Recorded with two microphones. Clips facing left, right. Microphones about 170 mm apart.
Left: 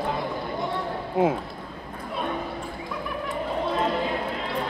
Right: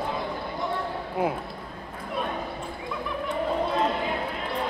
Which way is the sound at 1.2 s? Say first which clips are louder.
Left 5 dB; 20° left (ahead or behind).